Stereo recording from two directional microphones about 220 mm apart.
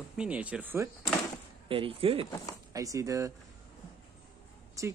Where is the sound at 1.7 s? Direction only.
25° right (ahead or behind).